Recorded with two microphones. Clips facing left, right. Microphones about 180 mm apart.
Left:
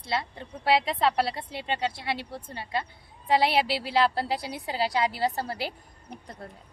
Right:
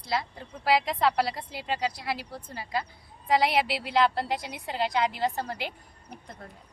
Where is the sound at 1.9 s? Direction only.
30° left (ahead or behind).